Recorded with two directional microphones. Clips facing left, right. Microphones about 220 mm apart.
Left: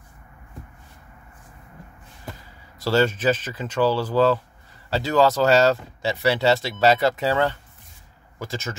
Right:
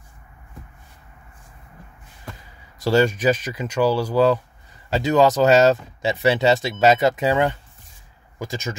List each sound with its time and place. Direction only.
2.8 s speech: 15° right (ahead or behind)